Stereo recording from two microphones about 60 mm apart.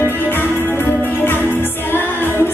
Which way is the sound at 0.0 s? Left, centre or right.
Left.